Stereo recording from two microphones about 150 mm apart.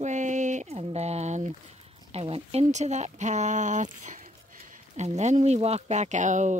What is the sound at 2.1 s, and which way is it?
Speech, 40° right (ahead or behind).